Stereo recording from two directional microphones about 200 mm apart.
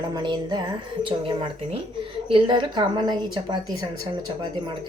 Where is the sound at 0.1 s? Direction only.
20° right (ahead or behind).